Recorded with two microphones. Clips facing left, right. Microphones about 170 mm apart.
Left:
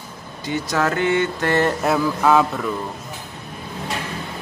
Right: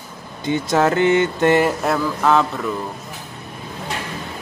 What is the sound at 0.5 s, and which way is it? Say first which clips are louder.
Speech: right 4 dB; 25° right (ahead or behind).